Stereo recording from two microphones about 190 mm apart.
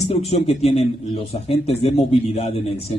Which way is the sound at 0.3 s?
35° left (ahead or behind).